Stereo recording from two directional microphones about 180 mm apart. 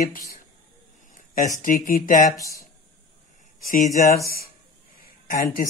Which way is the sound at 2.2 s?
20° left (ahead or behind).